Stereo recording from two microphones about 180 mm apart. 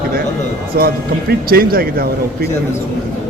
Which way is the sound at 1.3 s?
55° right (ahead or behind).